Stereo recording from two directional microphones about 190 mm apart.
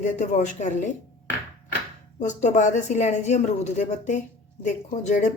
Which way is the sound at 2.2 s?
40° left (ahead or behind).